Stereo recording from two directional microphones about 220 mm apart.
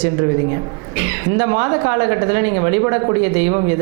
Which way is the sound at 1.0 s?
20° right (ahead or behind).